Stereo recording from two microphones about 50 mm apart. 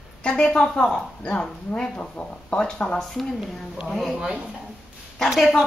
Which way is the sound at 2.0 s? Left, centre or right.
Left.